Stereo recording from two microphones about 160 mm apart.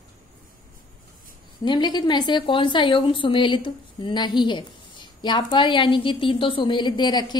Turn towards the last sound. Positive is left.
turn(degrees=25)  # may be behind; listen again after turning